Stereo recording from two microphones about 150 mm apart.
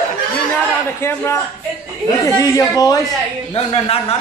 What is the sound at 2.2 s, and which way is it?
Speech, 20° left (ahead or behind).